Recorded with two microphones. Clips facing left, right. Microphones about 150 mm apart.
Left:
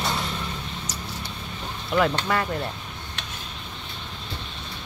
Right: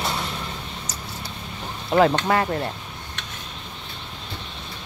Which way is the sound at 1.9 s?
40° right (ahead or behind).